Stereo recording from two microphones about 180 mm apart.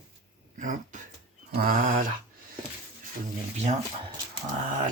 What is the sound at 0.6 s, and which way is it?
Speech, 45° right (ahead or behind).